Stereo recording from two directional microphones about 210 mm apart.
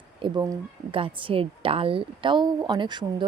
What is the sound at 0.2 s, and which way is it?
Speech, 20° right (ahead or behind).